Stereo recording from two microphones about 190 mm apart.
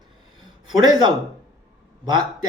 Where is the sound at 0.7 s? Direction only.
20° right (ahead or behind).